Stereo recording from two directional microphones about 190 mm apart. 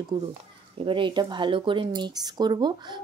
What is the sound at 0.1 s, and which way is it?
Speech, 25° right (ahead or behind).